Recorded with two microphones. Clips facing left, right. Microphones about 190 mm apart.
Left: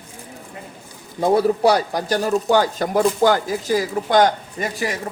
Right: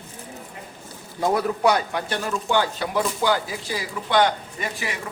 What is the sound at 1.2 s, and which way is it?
Speech, 30° left (ahead or behind).